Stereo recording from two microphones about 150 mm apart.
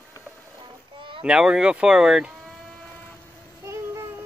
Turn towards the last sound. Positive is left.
turn(degrees=-20)  # may be behind; listen again after turning